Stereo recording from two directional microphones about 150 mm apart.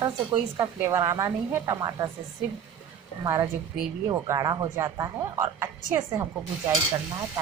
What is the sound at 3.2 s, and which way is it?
A woman's voice, 25° right (ahead or behind).